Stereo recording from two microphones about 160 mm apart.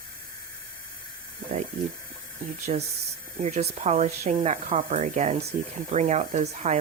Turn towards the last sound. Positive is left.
turn(degrees=-45)  # may be behind; listen again after turning